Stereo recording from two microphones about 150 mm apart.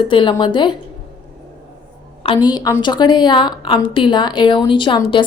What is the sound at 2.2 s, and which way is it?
A woman's voice, 30° left (ahead or behind).